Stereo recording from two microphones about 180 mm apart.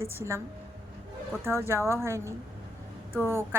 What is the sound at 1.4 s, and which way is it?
A woman's voice, 15° right (ahead or behind).